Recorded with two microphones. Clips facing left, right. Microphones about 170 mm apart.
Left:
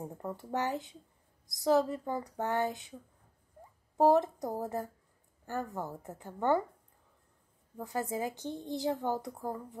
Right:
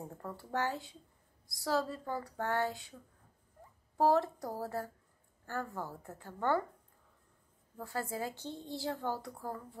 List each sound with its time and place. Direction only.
0.1 s a woman's voice: 20° left (ahead or behind)
7.7 s a woman's voice: 20° left (ahead or behind)